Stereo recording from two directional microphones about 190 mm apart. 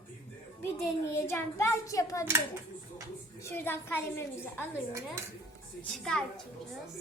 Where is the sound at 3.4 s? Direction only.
10° left (ahead or behind).